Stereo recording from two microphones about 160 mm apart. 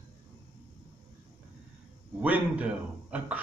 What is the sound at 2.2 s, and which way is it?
Speech, 10° right (ahead or behind).